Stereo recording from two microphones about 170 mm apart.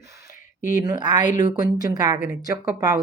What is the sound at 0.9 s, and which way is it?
Speech, 25° right (ahead or behind).